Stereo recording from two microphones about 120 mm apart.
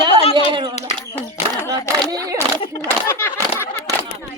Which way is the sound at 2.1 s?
30° right (ahead or behind).